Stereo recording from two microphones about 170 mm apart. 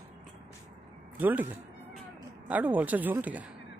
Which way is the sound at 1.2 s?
10° right (ahead or behind).